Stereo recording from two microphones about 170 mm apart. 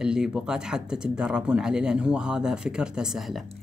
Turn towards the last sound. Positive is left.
turn(degrees=0)  # may be behind; listen again after turning